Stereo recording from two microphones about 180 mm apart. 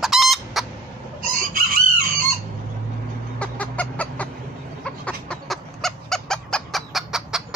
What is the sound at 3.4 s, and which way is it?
Chicken, 5° left (ahead or behind).